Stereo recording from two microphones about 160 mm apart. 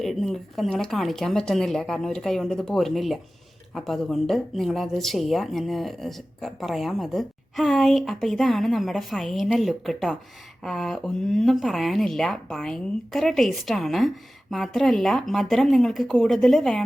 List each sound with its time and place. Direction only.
0.0 s speech: centre (ahead or behind)